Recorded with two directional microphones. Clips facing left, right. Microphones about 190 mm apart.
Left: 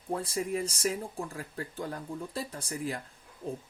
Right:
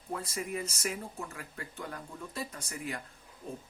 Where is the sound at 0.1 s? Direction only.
30° left (ahead or behind).